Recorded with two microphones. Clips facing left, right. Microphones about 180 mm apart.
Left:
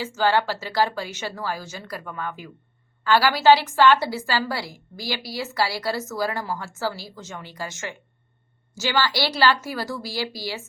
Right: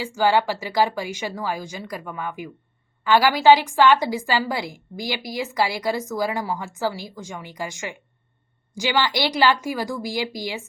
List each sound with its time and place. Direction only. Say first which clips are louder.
0.0 s a woman's voice: right 2 dB; 15° right (ahead or behind)